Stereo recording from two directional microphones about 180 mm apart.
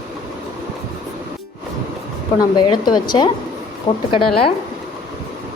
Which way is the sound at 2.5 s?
25° left (ahead or behind).